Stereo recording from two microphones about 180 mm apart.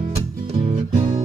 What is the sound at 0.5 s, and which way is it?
Music, 35° right (ahead or behind).